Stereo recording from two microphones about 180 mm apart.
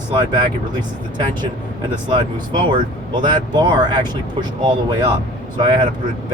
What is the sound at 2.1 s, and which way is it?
Speech, 25° right (ahead or behind).